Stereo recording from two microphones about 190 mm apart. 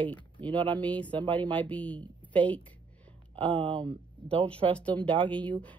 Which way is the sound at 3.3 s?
25° right (ahead or behind).